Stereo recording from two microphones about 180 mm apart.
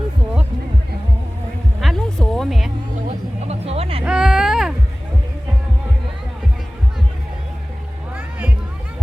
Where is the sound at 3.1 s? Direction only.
35° right (ahead or behind).